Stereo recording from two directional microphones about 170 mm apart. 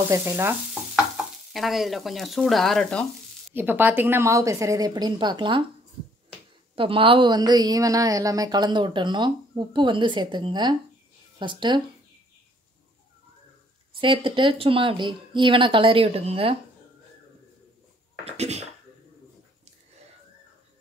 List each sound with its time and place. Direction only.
0.1 s stir: 15° right (ahead or behind)
1.1 s stir: centre (ahead or behind)
3.5 s a woman's voice: 10° right (ahead or behind); by 5.6 s 25° right (ahead or behind)
6.7 s a woman's voice: 30° right (ahead or behind)
13.9 s a woman's voice: 30° right (ahead or behind)
18.2 s a sound: 40° right (ahead or behind)